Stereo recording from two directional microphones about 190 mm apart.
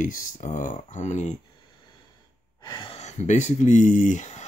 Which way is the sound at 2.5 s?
25° left (ahead or behind).